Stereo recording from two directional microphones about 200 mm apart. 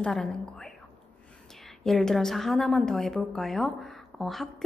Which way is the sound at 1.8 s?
Centre (ahead or behind).